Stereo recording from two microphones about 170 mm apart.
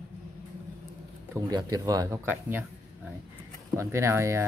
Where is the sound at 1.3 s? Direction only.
20° right (ahead or behind).